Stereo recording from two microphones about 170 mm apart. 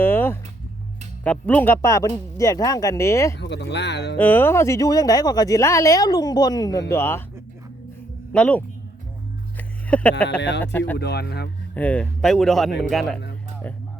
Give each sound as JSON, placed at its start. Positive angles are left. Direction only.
{"t": 0.0, "sound": "a sound", "side_deg": 15}
{"t": 1.2, "sound": "speech", "side_deg": 10}
{"t": 3.3, "sound": "speech", "side_deg": 90}
{"t": 4.2, "sound": "speech", "side_deg": 10}
{"t": 8.3, "sound": "speech", "side_deg": 10}
{"t": 9.6, "sound": "a sound", "side_deg": 10}
{"t": 10.6, "sound": "speech", "side_deg": 10}
{"t": 10.9, "sound": "speech", "side_deg": 75}
{"t": 11.7, "sound": "speech", "side_deg": 10}